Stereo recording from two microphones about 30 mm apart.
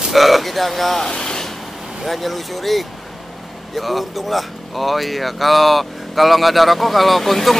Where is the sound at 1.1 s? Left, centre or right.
Left.